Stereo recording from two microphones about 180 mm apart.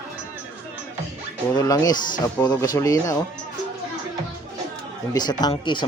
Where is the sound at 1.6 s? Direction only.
20° left (ahead or behind).